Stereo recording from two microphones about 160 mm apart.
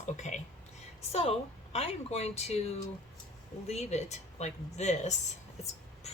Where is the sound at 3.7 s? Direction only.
45° left (ahead or behind).